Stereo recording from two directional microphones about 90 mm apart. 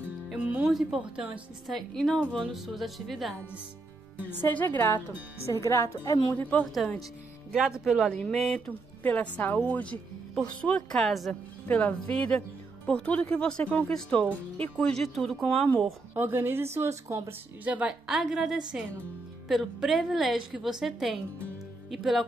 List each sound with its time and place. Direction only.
0.3 s music: 15° right (ahead or behind)
0.7 s a woman's voice: 5° right (ahead or behind)
1.7 s a woman's voice: 5° left (ahead or behind)
4.3 s a woman's voice: 20° left (ahead or behind)
5.6 s a woman's voice: 35° left (ahead or behind)
6.6 s a woman's voice: centre (ahead or behind)
8.1 s a woman's voice: 5° left (ahead or behind)
8.5 s a woman's voice: 20° left (ahead or behind); by 11.3 s centre (ahead or behind)
11.6 s speech: 15° left (ahead or behind)
15.4 s speech: 15° left (ahead or behind)
16.2 s speech: 25° right (ahead or behind)
17.6 s a woman's voice: 15° right (ahead or behind)